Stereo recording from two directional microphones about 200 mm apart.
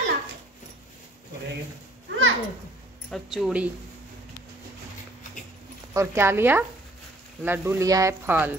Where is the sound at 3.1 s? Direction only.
Centre (ahead or behind).